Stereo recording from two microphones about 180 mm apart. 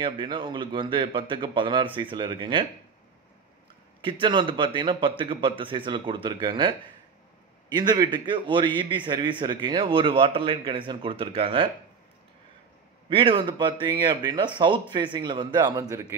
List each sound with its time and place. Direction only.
0.0 s a man's voice: 25° right (ahead or behind)
4.0 s a man's voice: 25° right (ahead or behind)
7.7 s a man's voice: 25° right (ahead or behind)
13.1 s a man's voice: 30° right (ahead or behind)